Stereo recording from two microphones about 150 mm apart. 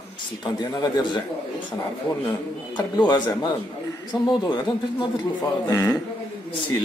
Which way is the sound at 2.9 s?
30° left (ahead or behind).